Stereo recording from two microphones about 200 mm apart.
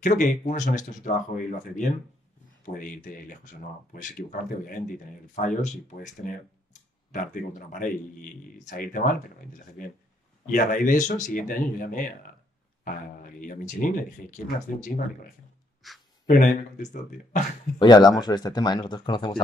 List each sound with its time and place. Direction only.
0.0 s speech: 40° left (ahead or behind)
15.8 s speech: centre (ahead or behind)
16.3 s speech: 40° left (ahead or behind)
17.7 s speech: 20° left (ahead or behind)